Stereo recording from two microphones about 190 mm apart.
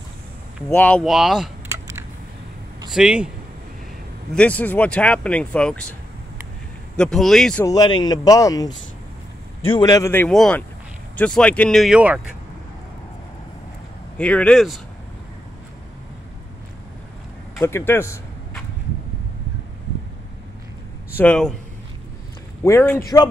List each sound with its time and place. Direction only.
0.7 s speech: 10° left (ahead or behind)
2.9 s speech: 5° right (ahead or behind)
4.4 s speech: 10° left (ahead or behind)
7.0 s speech: centre (ahead or behind)
7.6 s speech: 20° left (ahead or behind); by 12.2 s 5° right (ahead or behind)
14.1 s speech: 5° left (ahead or behind)
17.6 s speech: 15° left (ahead or behind)
21.2 s speech: 5° left (ahead or behind)
22.6 s speech: 15° left (ahead or behind)